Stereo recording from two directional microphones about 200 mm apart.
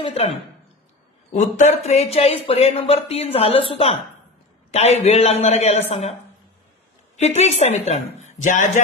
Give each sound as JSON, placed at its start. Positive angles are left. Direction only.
{"t": 0.0, "sound": "a woman's voice", "side_deg": 30}
{"t": 7.2, "sound": "speech", "side_deg": 35}